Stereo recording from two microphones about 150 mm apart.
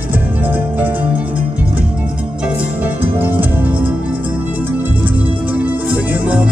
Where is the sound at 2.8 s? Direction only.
10° right (ahead or behind).